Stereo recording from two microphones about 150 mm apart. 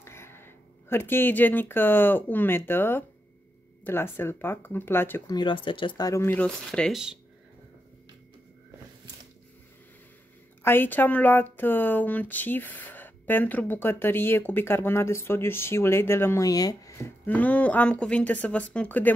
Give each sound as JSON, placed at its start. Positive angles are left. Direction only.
{"t": 0.0, "sound": "speech", "side_deg": 15}
{"t": 5.3, "sound": "speech", "side_deg": 30}
{"t": 6.2, "sound": "speech", "side_deg": 10}
{"t": 10.6, "sound": "speech", "side_deg": 15}
{"t": 17.3, "sound": "speech", "side_deg": 10}